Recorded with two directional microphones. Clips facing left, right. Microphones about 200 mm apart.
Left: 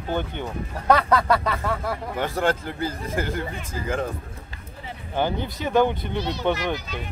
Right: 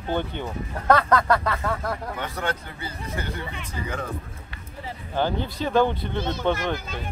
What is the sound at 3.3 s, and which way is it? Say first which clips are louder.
Speech: left 4 dB; 45° left (ahead or behind).